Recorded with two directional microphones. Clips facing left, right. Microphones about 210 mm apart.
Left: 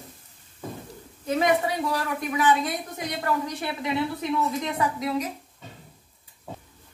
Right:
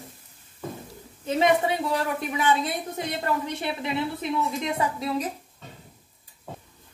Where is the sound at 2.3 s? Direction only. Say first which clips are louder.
Left 3 dB; 25° right (ahead or behind).